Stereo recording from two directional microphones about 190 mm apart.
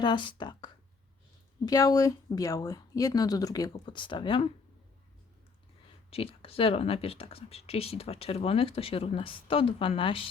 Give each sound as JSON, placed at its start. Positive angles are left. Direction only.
{"t": 0.0, "sound": "speech", "side_deg": 25}
{"t": 6.1, "sound": "speech", "side_deg": 30}